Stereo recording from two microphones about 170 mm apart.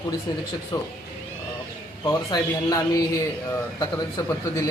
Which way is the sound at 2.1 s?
25° left (ahead or behind).